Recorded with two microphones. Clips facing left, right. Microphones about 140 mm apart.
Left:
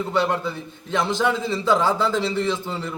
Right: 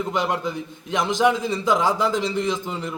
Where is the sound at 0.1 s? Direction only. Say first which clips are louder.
Left 4 dB; 15° right (ahead or behind).